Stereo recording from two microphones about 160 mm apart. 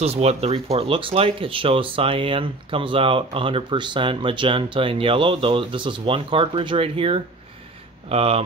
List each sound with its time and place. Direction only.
0.0 s speech: 40° right (ahead or behind)